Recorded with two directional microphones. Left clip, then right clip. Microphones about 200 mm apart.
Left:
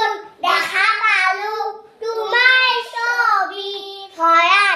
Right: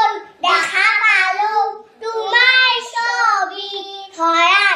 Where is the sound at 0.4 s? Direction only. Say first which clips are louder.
Right 2 dB; centre (ahead or behind).